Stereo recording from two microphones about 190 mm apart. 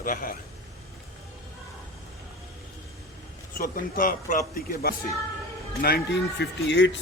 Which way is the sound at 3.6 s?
50° left (ahead or behind).